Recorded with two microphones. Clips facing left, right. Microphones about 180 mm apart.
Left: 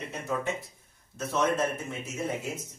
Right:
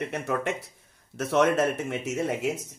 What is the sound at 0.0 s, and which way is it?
Speech, 70° right (ahead or behind).